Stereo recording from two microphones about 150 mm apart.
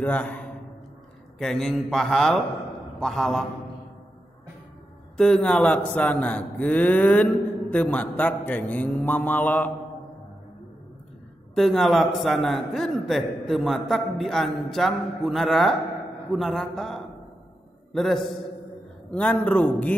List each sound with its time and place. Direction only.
0.0 s a man's voice: 10° left (ahead or behind)
5.1 s a man's voice: 5° left (ahead or behind)
11.5 s a man's voice: centre (ahead or behind)